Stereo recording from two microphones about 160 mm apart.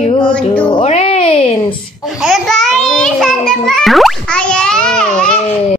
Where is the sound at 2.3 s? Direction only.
Centre (ahead or behind).